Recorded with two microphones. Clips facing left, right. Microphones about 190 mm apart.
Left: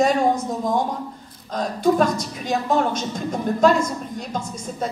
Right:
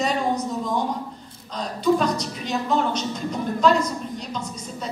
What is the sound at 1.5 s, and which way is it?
A woman's voice, 50° left (ahead or behind).